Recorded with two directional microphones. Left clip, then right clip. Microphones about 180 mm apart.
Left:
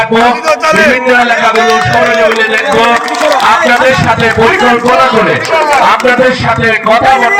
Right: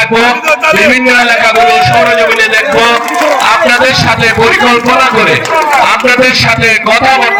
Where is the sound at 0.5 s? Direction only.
15° left (ahead or behind).